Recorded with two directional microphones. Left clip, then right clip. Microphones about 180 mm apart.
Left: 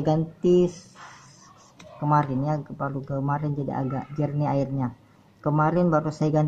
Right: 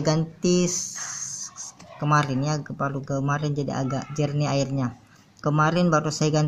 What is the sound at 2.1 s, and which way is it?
Speech, 50° right (ahead or behind).